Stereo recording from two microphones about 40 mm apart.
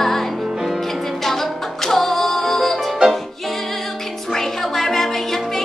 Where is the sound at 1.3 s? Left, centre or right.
Centre.